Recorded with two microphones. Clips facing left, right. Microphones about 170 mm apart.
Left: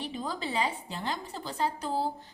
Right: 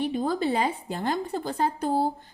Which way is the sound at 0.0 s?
50° right (ahead or behind).